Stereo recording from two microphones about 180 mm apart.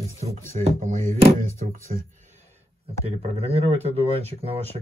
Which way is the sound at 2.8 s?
35° right (ahead or behind).